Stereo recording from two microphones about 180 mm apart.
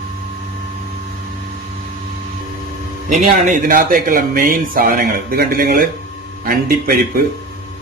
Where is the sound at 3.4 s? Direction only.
50° right (ahead or behind).